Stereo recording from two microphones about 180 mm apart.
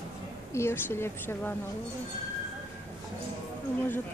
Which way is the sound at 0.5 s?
15° left (ahead or behind).